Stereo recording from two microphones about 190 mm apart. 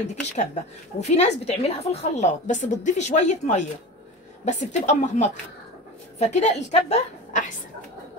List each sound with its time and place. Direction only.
0.0 s a woman's voice: 40° left (ahead or behind)